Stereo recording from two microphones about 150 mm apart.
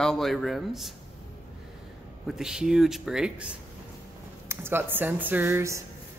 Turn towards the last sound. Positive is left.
turn(degrees=-15)  # may be behind; listen again after turning